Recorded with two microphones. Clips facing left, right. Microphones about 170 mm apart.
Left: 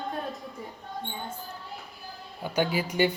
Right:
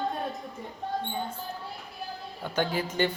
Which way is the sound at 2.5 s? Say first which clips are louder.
Left 2 dB; 10° left (ahead or behind).